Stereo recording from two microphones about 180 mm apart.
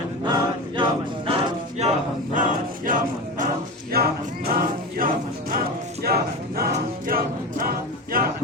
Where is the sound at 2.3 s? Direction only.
45° right (ahead or behind).